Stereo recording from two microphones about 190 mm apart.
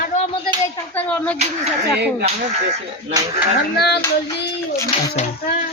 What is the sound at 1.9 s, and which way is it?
Speech, 60° right (ahead or behind).